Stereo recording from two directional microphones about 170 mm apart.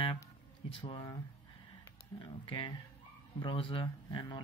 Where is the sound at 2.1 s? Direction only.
25° left (ahead or behind).